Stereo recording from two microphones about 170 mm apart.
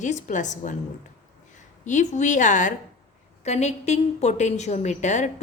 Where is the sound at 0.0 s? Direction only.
45° left (ahead or behind).